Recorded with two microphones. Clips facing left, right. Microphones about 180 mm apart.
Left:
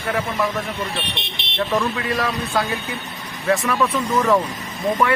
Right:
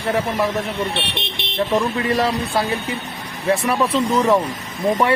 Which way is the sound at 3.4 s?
25° right (ahead or behind).